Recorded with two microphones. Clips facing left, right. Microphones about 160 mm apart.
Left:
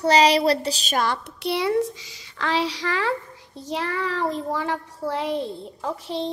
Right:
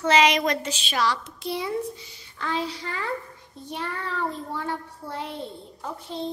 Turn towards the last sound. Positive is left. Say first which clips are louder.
# left 5 dB
turn(degrees=90)